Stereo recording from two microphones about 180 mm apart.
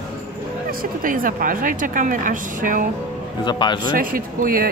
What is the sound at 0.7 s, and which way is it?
A woman's voice, 50° right (ahead or behind).